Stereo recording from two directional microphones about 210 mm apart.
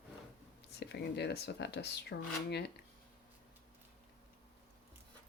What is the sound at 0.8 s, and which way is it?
Speech, 55° left (ahead or behind).